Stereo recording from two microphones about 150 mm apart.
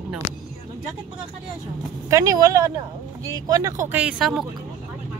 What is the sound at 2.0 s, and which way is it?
Speech, 20° right (ahead or behind).